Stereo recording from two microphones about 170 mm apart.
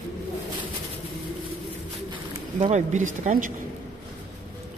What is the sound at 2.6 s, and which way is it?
Speech, 45° right (ahead or behind).